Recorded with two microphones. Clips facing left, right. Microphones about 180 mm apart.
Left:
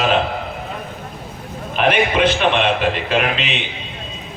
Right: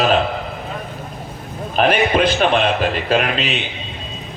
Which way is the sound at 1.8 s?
35° right (ahead or behind).